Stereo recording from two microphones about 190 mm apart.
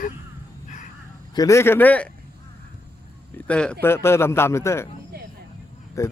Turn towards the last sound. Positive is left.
turn(degrees=15)  # may be behind; listen again after turning